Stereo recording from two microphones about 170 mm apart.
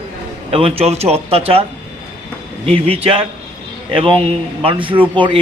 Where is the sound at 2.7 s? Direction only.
35° right (ahead or behind).